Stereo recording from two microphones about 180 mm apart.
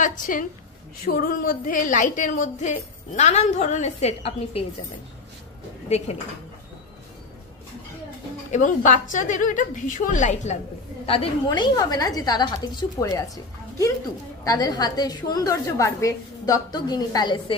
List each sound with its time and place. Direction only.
0.0 s a woman's voice: 45° left (ahead or behind)
5.9 s speech: 35° left (ahead or behind)
8.5 s a woman's voice: 45° left (ahead or behind)
11.1 s a woman's voice: 30° left (ahead or behind)
14.4 s a woman's voice: 20° left (ahead or behind)